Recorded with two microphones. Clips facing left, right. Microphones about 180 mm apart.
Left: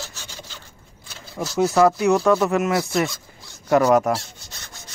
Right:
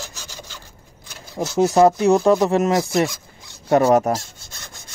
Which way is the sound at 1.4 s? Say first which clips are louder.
Right 3 dB; 25° right (ahead or behind).